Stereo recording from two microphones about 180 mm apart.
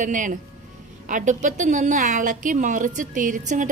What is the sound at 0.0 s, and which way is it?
A woman's voice, 45° right (ahead or behind).